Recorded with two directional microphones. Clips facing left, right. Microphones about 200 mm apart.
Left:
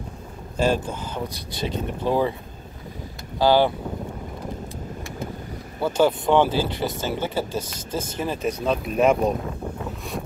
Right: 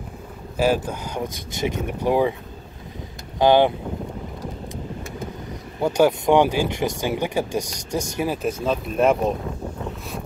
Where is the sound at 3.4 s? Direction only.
20° right (ahead or behind).